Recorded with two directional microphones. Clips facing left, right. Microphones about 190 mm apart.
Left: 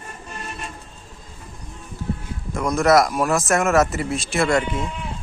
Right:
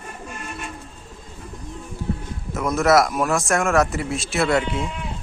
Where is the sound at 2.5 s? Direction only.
Centre (ahead or behind).